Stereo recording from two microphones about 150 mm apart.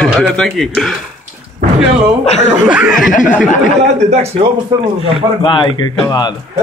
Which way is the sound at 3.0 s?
60° left (ahead or behind).